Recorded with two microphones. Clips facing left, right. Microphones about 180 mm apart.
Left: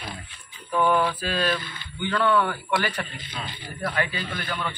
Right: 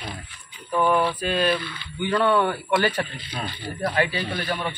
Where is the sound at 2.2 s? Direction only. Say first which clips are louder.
Right 1 dB; 25° right (ahead or behind).